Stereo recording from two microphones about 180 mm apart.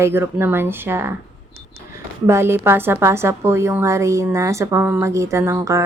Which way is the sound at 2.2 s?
15° right (ahead or behind).